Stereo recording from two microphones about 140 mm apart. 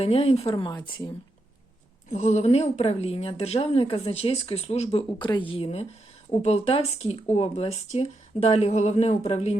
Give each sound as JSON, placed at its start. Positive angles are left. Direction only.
{"t": 0.0, "sound": "speech", "side_deg": 45}
{"t": 2.0, "sound": "a woman's voice", "side_deg": 55}